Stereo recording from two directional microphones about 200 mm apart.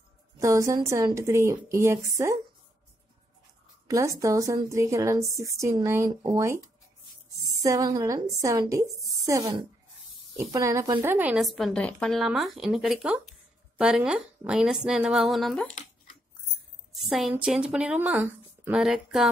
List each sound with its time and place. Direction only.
0.4 s a woman's voice: 15° right (ahead or behind)
3.8 s a woman's voice: 15° right (ahead or behind)
7.6 s a woman's voice: 15° right (ahead or behind); by 15.7 s 5° left (ahead or behind)
16.9 s a woman's voice: centre (ahead or behind)